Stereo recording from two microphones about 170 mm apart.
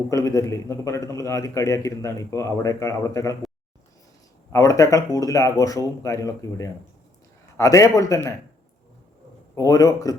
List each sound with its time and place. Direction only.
0.1 s a man's voice: 20° left (ahead or behind)
4.5 s speech: 20° left (ahead or behind)
9.6 s speech: 20° left (ahead or behind)